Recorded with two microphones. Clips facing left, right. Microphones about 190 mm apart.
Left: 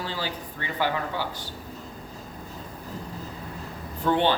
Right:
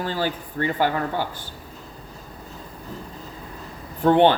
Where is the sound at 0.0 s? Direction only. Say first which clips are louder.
Right 6 dB; 50° right (ahead or behind).